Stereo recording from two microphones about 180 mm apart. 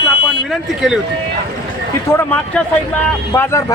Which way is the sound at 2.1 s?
10° left (ahead or behind).